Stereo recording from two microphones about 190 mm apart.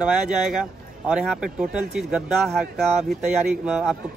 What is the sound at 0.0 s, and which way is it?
A man's voice, 5° right (ahead or behind).